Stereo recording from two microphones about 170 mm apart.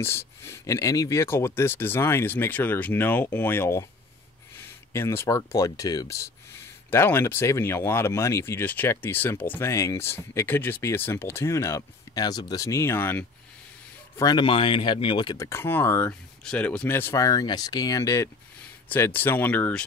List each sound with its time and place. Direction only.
0.0 s speech: 15° left (ahead or behind)
4.9 s speech: 15° left (ahead or behind)
14.1 s speech: 25° left (ahead or behind)
15.3 s speech: 15° left (ahead or behind)